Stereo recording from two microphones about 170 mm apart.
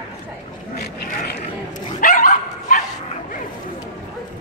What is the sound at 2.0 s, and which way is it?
Dog, 50° left (ahead or behind).